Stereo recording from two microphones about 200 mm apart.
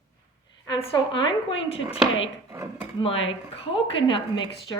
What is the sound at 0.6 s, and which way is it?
A woman's voice, 25° left (ahead or behind).